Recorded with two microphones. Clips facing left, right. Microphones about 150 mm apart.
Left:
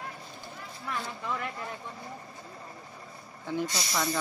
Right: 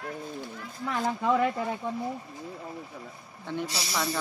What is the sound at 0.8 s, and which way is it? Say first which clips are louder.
Speech: right 9 dB; 90° right.